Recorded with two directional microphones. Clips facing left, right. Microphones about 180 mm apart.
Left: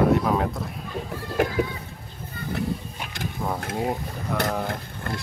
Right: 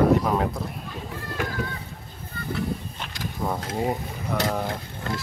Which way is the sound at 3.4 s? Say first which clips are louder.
Right 1 dB; 5° left (ahead or behind).